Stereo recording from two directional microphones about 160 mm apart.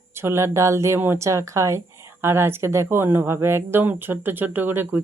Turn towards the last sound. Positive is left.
turn(degrees=-15)  # may be behind; listen again after turning